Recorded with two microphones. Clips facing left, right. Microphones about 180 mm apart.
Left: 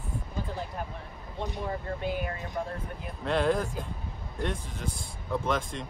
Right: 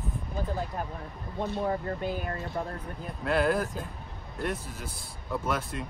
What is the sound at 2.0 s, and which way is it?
Speech, 40° right (ahead or behind).